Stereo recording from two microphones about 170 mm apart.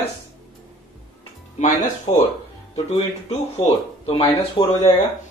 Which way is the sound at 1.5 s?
45° left (ahead or behind).